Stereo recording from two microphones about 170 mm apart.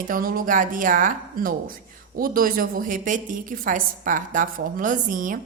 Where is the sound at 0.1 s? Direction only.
55° right (ahead or behind).